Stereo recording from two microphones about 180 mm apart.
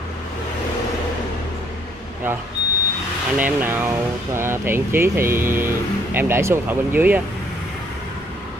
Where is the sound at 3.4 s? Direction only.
10° right (ahead or behind).